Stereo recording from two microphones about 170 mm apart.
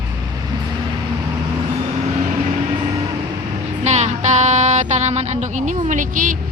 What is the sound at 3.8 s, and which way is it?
A woman's voice, 40° right (ahead or behind).